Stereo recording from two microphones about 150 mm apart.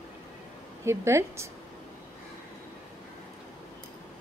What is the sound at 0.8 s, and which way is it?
Speech, 20° right (ahead or behind).